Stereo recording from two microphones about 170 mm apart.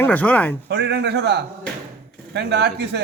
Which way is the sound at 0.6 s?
85° right.